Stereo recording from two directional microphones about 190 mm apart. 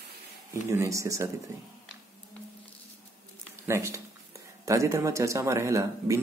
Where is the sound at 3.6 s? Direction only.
15° right (ahead or behind).